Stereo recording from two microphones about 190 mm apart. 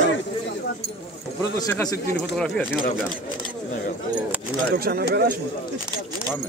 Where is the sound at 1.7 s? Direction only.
10° left (ahead or behind).